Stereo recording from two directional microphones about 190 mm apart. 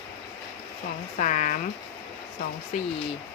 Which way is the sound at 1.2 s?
40° left (ahead or behind).